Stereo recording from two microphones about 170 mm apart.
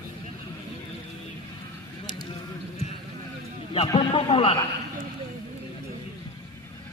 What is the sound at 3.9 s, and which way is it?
Speech, 30° left (ahead or behind).